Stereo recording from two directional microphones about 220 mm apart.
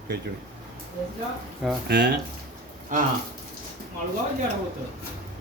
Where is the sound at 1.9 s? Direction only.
50° right (ahead or behind).